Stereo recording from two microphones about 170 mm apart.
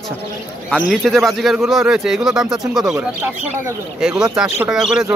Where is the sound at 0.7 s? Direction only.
Centre (ahead or behind).